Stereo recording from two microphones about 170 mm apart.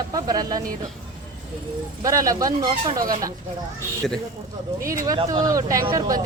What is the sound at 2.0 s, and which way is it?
A woman's voice, 20° right (ahead or behind).